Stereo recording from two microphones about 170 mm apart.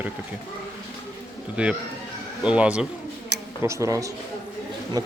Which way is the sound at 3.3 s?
80° right.